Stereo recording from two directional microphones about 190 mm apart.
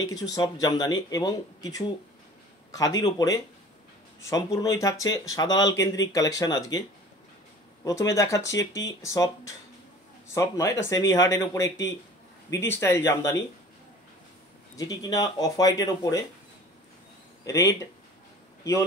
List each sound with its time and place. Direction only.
0.0 s speech: 20° left (ahead or behind)
7.8 s speech: 15° left (ahead or behind)
14.8 s speech: 20° left (ahead or behind)
17.5 s a man's voice: 15° left (ahead or behind)